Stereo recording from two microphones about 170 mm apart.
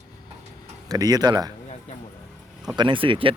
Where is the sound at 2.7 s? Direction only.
30° right (ahead or behind).